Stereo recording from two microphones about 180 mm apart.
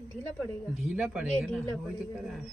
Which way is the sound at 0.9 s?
5° right (ahead or behind).